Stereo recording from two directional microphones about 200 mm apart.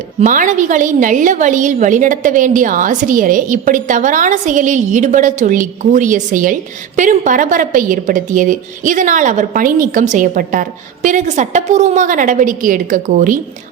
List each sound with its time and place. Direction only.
0.2 s a woman's voice: 40° right (ahead or behind)